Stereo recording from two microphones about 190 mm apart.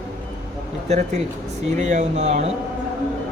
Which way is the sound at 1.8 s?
40° right (ahead or behind).